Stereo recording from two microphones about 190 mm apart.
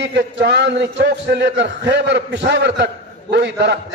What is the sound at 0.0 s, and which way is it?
A man's voice, 65° right (ahead or behind).